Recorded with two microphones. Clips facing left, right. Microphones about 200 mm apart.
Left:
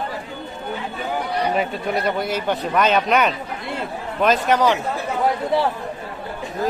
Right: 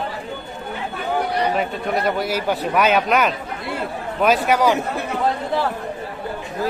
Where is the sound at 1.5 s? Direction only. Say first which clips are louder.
Even; centre (ahead or behind).